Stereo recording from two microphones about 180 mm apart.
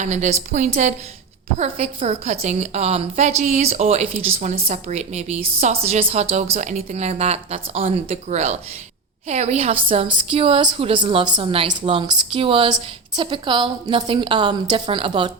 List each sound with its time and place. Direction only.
0.0 s a woman's voice: 40° right (ahead or behind)